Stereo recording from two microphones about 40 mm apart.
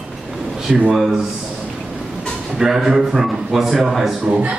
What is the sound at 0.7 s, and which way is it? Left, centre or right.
Speech, centre.